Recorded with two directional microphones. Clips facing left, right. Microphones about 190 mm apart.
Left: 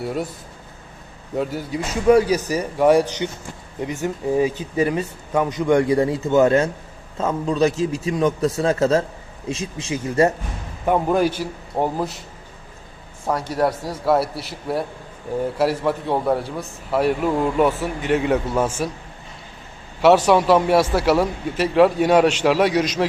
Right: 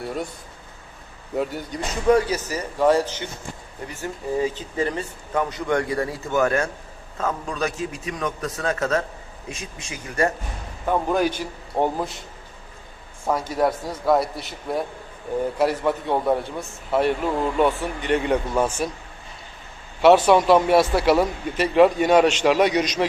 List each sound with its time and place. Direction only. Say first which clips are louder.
0.0 s a man's voice: left 3 dB; 5° left (ahead or behind)
1.4 s speech: left 2 dB; centre (ahead or behind); by 10.3 s 25° left (ahead or behind)
10.8 s a man's voice: left 3 dB; 10° left (ahead or behind)
13.2 s a man's voice: left 1 dB; centre (ahead or behind)
20.0 s a man's voice: even; centre (ahead or behind)